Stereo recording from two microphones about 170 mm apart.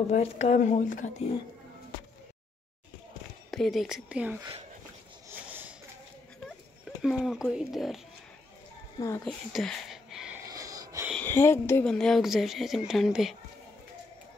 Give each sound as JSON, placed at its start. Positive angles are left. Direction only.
{"t": 0.1, "sound": "speech", "side_deg": 40}
{"t": 3.5, "sound": "speech", "side_deg": 0}
{"t": 5.3, "sound": "a sound", "side_deg": -10}
{"t": 7.0, "sound": "speech", "side_deg": 0}
{"t": 9.2, "sound": "a sound", "side_deg": 0}
{"t": 10.5, "sound": "wheeze", "side_deg": -20}
{"t": 11.1, "sound": "speech", "side_deg": 15}
{"t": 11.8, "sound": "speech", "side_deg": 5}